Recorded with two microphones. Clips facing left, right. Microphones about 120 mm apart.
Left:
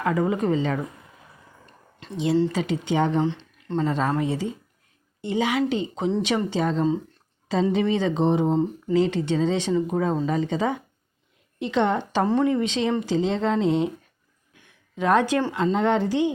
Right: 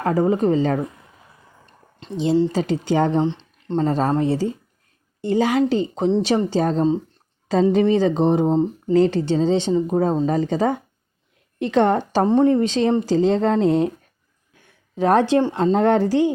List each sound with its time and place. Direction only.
0.0 s speech: 35° right (ahead or behind)
2.0 s speech: 25° right (ahead or behind)
2.5 s speech: 35° right (ahead or behind)
3.2 s speech: 25° right (ahead or behind)
3.8 s speech: 35° right (ahead or behind)
12.2 s speech: 25° right (ahead or behind)
12.5 s speech: 40° right (ahead or behind)
14.9 s speech: 35° right (ahead or behind)
15.5 s speech: 40° right (ahead or behind)